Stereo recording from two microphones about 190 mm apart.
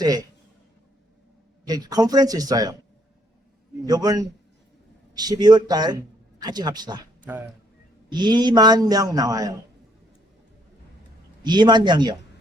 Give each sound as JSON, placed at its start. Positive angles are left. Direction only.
{"t": 0.0, "sound": "a man's voice", "side_deg": -20}
{"t": 1.6, "sound": "a man's voice", "side_deg": -20}
{"t": 3.8, "sound": "a man's voice", "side_deg": -20}
{"t": 8.1, "sound": "a man's voice", "side_deg": -20}
{"t": 11.4, "sound": "a man's voice", "side_deg": -20}